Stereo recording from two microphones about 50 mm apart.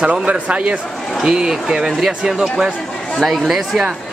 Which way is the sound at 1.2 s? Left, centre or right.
Centre.